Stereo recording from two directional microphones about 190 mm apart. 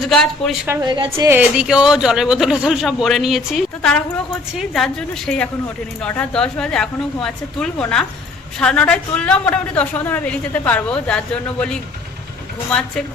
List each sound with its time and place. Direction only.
0.0 s speech: centre (ahead or behind)
0.7 s a woman's voice: 20° right (ahead or behind)
1.1 s a woman's voice: 10° right (ahead or behind); by 11.2 s 5° left (ahead or behind)